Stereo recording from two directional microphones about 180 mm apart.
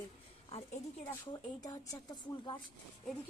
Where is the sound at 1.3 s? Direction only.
20° left (ahead or behind).